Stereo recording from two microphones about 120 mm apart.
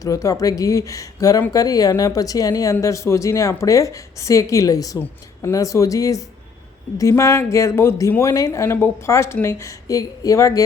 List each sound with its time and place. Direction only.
0.0 s speech: 25° left (ahead or behind)